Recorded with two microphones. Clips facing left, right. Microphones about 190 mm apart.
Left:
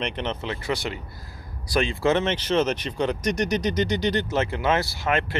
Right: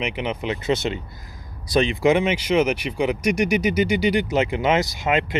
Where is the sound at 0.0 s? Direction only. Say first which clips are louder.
Right 3 dB; 10° right (ahead or behind).